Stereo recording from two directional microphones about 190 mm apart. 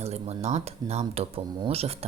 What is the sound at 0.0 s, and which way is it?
Speech, 35° right (ahead or behind).